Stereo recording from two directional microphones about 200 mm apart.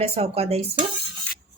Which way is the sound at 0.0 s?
30° right (ahead or behind).